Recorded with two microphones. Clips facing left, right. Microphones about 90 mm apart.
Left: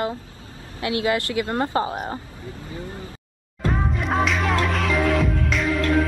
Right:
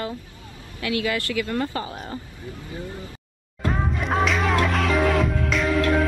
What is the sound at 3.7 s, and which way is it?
Music, centre (ahead or behind).